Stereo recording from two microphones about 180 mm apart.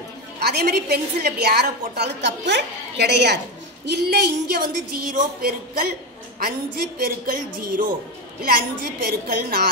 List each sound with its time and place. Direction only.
0.4 s a woman's voice: 65° right (ahead or behind)